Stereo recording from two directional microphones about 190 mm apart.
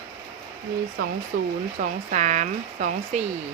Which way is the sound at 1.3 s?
45° right (ahead or behind).